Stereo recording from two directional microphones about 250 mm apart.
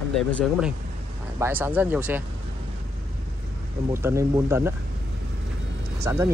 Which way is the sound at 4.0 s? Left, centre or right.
Centre.